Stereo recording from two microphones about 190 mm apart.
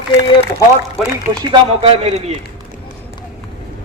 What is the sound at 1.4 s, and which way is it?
Speech, 25° right (ahead or behind).